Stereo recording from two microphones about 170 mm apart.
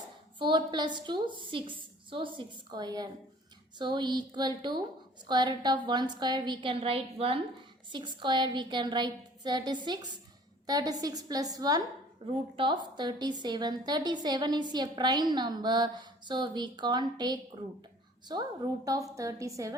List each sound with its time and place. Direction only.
0.3 s a woman's voice: 25° right (ahead or behind)